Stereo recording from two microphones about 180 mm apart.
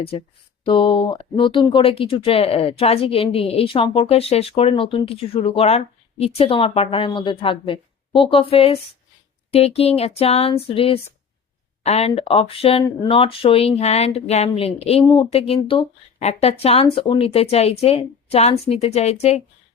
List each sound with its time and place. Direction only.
0.6 s speech: 30° left (ahead or behind)